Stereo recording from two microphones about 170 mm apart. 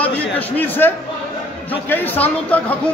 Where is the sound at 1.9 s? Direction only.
10° left (ahead or behind).